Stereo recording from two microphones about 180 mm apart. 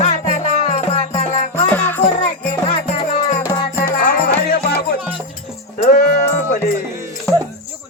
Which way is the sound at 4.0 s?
65° left (ahead or behind).